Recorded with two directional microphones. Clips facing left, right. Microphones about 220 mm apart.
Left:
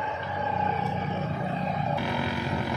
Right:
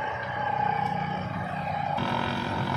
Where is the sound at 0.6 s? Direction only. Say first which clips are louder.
Right 1 dB; 35° left (ahead or behind).